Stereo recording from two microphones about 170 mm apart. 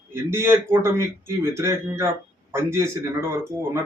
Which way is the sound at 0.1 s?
15° right (ahead or behind).